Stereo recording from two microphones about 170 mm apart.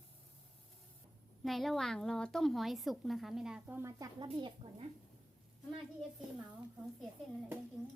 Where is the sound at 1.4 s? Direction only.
Centre (ahead or behind).